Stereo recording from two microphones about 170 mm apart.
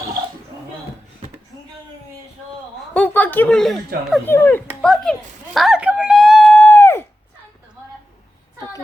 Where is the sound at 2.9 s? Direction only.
10° left (ahead or behind).